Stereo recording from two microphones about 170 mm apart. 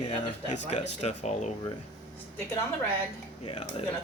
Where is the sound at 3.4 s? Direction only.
35° left (ahead or behind).